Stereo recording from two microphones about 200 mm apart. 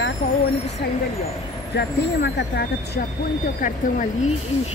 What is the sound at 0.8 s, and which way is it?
Speech, 50° left (ahead or behind).